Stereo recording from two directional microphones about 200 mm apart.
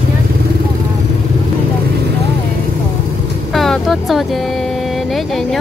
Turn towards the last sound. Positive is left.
turn(degrees=0)  # may be behind; listen again after turning